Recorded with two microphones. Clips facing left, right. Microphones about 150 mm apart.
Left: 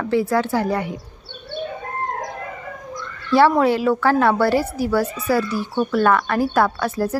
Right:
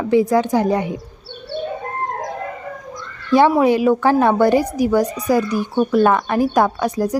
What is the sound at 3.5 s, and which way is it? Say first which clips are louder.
Speech: right 3 dB; 15° right (ahead or behind).